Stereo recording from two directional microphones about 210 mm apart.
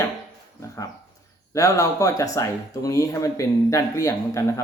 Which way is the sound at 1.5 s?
15° left (ahead or behind).